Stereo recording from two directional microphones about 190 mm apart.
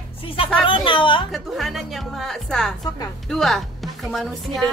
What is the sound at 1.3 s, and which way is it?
A woman's voice, centre (ahead or behind).